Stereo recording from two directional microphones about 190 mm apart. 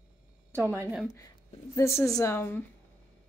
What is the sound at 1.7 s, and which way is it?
Speech, 15° left (ahead or behind).